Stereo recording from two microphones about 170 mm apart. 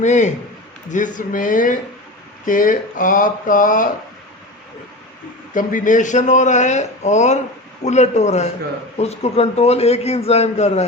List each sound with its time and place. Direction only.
0.0 s a man's voice: 45° left (ahead or behind)
5.5 s a man's voice: 50° left (ahead or behind)